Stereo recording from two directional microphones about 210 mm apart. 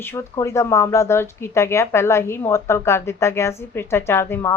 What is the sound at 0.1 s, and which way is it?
A woman's voice, 15° left (ahead or behind).